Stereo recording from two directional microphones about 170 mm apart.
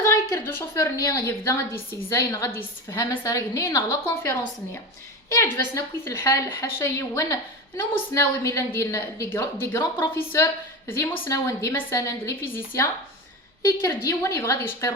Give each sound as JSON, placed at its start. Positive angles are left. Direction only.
{"t": 0.0, "sound": "a woman's voice", "side_deg": 15}